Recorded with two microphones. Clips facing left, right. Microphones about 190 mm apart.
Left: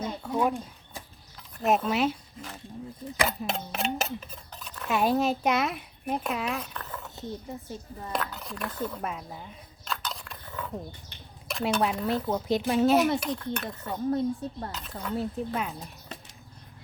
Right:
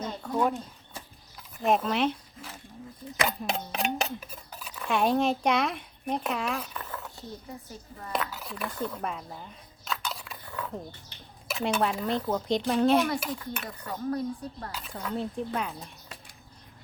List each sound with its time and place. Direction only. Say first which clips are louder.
0.0 s a sound: even; 5° left (ahead or behind)
1.5 s speech: left 1 dB; 5° left (ahead or behind)
7.2 s speech: left 5 dB; 20° left (ahead or behind)
8.1 s speech: right 1 dB; 5° right (ahead or behind)
13.7 s speech: left 2 dB; 25° left (ahead or behind)
14.7 s speech: left 1 dB; 5° right (ahead or behind)